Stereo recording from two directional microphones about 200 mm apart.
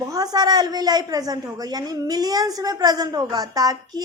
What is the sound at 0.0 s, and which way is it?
A woman's voice, 20° right (ahead or behind).